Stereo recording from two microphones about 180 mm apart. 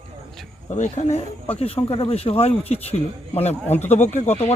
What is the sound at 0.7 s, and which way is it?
Speech, 40° left (ahead or behind).